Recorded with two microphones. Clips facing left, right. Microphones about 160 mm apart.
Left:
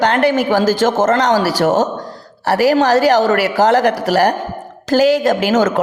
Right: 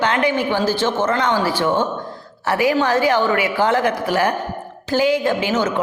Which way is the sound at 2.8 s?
80° left.